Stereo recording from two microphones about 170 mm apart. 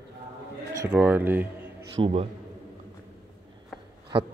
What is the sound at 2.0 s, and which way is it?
Speech, 35° right (ahead or behind).